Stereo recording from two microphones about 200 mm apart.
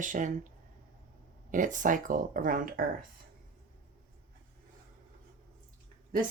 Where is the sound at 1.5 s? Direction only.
40° right (ahead or behind).